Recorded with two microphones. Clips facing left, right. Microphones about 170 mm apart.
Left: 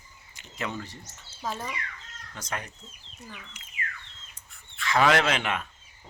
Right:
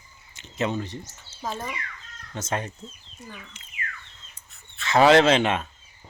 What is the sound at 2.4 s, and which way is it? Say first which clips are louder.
Speech: right 7 dB; 25° right (ahead or behind).